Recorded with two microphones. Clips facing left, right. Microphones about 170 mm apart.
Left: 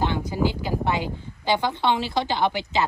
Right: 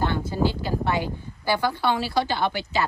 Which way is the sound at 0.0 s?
15° left (ahead or behind).